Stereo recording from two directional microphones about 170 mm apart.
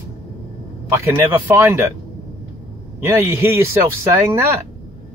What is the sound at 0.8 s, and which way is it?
Speech, 15° right (ahead or behind).